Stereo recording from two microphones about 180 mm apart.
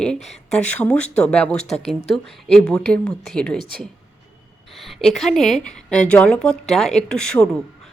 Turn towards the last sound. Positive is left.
turn(degrees=5)  # may be behind; listen again after turning